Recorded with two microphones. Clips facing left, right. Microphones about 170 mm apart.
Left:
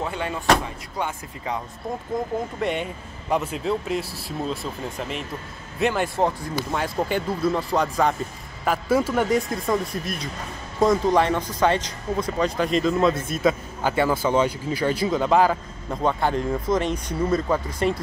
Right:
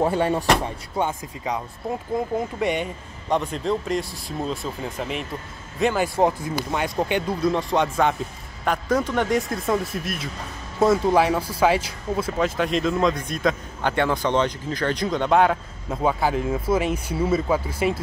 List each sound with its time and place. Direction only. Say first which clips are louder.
0.0 s speech: right 7 dB; 35° right (ahead or behind)
0.9 s speech: right 4 dB; 15° right (ahead or behind)
2.1 s speech: right 1 dB; 5° right (ahead or behind)